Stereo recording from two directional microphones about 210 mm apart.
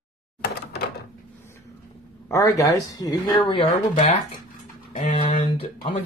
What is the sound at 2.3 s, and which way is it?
Speech, 15° left (ahead or behind).